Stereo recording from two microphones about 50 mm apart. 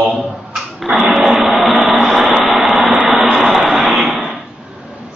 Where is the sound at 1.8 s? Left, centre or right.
Centre.